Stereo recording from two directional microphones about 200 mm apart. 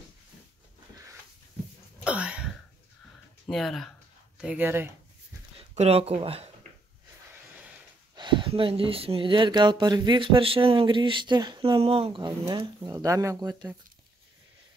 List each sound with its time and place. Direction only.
2.0 s a sound: 5° right (ahead or behind)
3.4 s speech: centre (ahead or behind)
5.6 s speech: 30° right (ahead or behind)
8.2 s speech: 25° right (ahead or behind)